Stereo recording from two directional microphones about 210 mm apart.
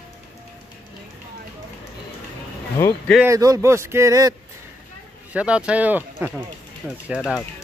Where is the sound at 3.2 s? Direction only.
15° right (ahead or behind).